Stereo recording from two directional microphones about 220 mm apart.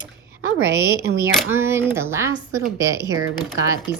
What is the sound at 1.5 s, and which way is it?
Speech, 10° right (ahead or behind).